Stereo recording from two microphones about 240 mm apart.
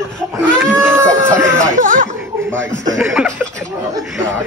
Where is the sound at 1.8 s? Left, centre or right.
Right.